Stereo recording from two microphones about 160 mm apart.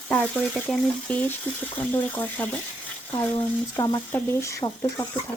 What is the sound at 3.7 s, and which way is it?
Speech, 20° left (ahead or behind).